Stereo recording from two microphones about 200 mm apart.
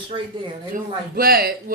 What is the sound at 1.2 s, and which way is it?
Speech, 50° right (ahead or behind).